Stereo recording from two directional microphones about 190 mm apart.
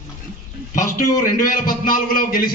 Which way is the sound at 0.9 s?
45° left (ahead or behind).